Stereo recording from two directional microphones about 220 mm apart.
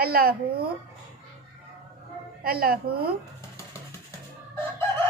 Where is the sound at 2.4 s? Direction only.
45° right (ahead or behind).